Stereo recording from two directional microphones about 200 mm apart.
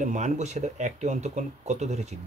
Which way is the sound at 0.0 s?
35° right (ahead or behind).